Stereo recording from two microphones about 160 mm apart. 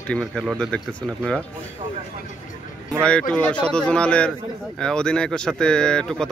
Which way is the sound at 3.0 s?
5° left (ahead or behind).